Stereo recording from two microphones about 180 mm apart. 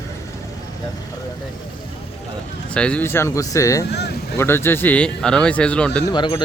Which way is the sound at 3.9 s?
70° left (ahead or behind).